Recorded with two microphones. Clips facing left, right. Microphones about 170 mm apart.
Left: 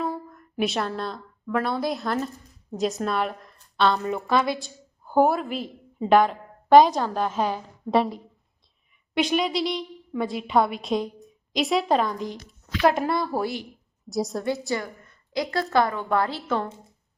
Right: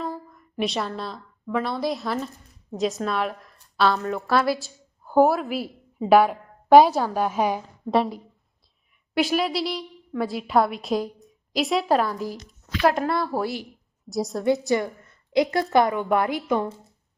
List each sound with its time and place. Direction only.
0.0 s a woman's voice: 5° left (ahead or behind)
7.9 s a woman's voice: centre (ahead or behind)
14.4 s a woman's voice: 20° right (ahead or behind)